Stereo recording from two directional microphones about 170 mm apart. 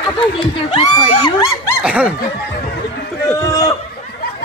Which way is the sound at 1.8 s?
10° right (ahead or behind).